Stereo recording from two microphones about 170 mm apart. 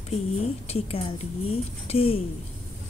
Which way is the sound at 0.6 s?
35° left (ahead or behind).